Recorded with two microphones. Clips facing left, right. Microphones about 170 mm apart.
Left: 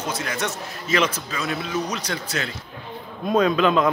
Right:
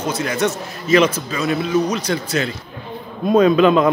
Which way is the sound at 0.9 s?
10° right (ahead or behind).